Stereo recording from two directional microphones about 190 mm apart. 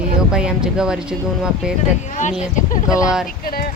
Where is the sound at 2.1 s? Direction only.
40° left (ahead or behind).